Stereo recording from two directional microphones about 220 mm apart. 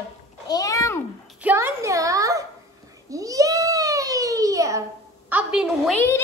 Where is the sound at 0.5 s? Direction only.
15° left (ahead or behind).